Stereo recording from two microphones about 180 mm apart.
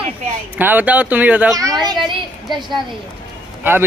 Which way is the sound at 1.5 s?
20° right (ahead or behind).